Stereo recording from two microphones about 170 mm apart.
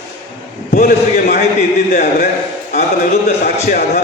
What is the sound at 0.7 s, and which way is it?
A man's voice, 60° left (ahead or behind).